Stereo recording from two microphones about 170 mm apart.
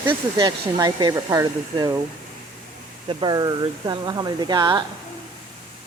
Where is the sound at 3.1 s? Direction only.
25° right (ahead or behind).